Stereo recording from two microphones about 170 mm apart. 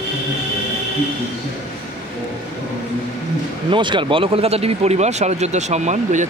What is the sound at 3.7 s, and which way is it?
Speech, 30° right (ahead or behind).